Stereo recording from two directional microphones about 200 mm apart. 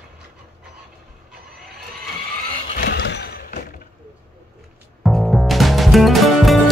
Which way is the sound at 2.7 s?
50° left (ahead or behind).